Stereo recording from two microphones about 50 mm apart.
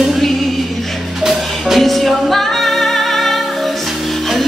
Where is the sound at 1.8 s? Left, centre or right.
Centre.